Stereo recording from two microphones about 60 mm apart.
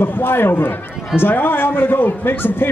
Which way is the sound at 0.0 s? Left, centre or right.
Left.